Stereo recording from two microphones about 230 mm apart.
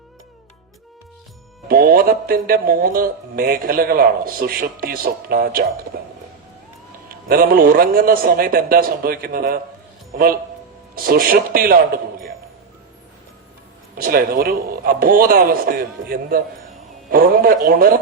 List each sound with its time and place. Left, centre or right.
1.6 s speech: right
5.9 s a sound: right
7.1 s speech: right
10.9 s speech: right
13.9 s speech: right